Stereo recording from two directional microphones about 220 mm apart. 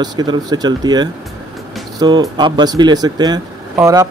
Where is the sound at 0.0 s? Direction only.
20° right (ahead or behind).